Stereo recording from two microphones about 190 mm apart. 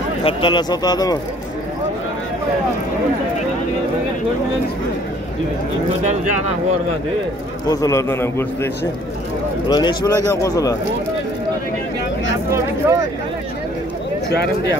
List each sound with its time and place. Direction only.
0.2 s speech: 25° left (ahead or behind)
7.6 s a man's voice: 20° left (ahead or behind)
9.7 s speech: 20° left (ahead or behind)
12.4 s vehicle: 15° right (ahead or behind)
14.3 s speech: 60° left (ahead or behind)